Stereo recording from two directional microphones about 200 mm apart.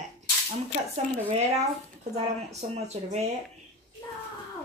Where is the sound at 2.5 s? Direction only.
35° right (ahead or behind).